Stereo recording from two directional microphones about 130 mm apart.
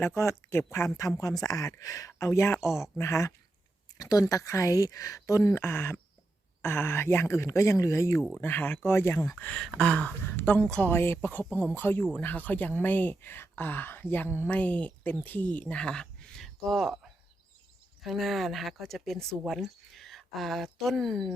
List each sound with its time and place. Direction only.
0.2 s speech: 20° left (ahead or behind)
9.4 s speech: 5° left (ahead or behind)
18.0 s speech: centre (ahead or behind)